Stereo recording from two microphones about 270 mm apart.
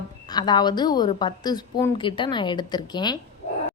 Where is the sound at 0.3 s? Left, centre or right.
Centre.